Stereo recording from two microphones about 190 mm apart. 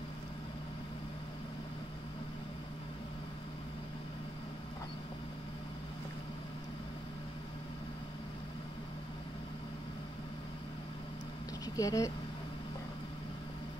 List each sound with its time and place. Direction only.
11.7 s speech: 20° left (ahead or behind)